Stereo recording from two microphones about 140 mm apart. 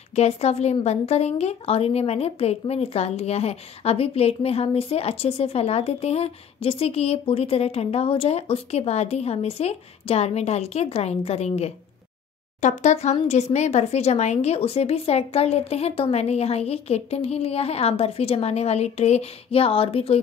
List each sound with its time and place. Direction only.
0.1 s a woman's voice: 50° left (ahead or behind)